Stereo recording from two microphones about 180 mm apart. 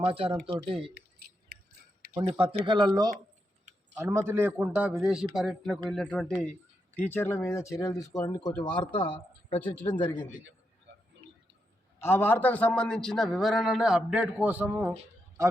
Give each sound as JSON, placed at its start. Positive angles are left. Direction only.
{"t": 0.0, "sound": "speech", "side_deg": -30}
{"t": 2.4, "sound": "speech", "side_deg": -30}
{"t": 3.9, "sound": "a man's voice", "side_deg": -15}
{"t": 9.6, "sound": "speech", "side_deg": 10}
{"t": 11.9, "sound": "a man's voice", "side_deg": 10}